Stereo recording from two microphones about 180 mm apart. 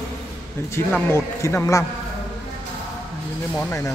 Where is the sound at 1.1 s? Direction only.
15° left (ahead or behind).